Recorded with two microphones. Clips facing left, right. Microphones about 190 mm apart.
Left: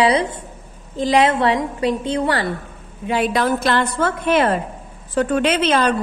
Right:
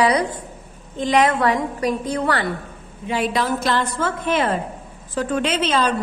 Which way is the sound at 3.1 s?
60° left (ahead or behind).